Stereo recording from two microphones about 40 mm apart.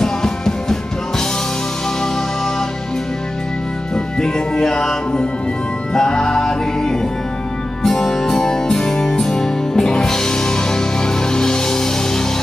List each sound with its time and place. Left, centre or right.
0.0 s music: centre
3.9 s music: centre